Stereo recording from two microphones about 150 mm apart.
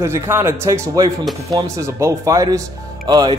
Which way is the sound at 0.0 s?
15° right (ahead or behind).